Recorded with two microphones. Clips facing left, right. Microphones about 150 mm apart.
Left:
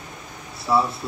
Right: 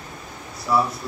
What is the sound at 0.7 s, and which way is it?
Speech, 20° left (ahead or behind).